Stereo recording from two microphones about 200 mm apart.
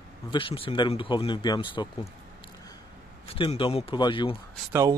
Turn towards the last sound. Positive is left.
turn(degrees=-15)  # may be behind; listen again after turning